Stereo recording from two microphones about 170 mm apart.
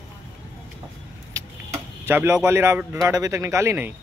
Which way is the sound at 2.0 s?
15° right (ahead or behind).